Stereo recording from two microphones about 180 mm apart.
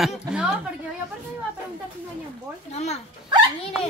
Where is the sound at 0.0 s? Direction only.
5° right (ahead or behind).